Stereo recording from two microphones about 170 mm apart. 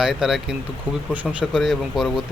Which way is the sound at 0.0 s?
5° right (ahead or behind).